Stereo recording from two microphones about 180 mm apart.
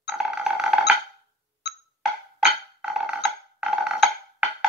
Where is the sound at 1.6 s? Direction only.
70° left (ahead or behind).